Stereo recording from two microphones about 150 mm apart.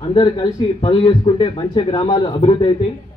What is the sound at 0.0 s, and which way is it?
A man's voice, 30° left (ahead or behind).